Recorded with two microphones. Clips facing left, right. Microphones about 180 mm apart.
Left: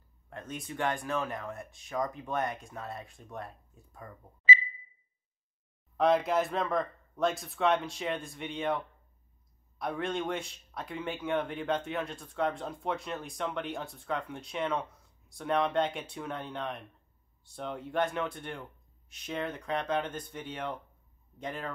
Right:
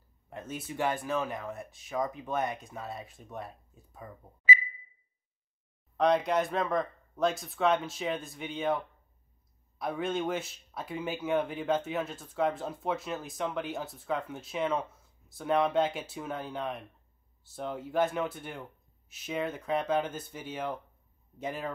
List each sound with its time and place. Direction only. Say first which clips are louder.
0.3 s speech: right 1 dB; 5° right (ahead or behind)
4.5 s a sound: even; 30° left (ahead or behind)
5.9 s a man's voice: even; centre (ahead or behind)